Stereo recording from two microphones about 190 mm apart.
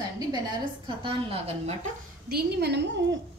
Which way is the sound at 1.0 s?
30° right (ahead or behind).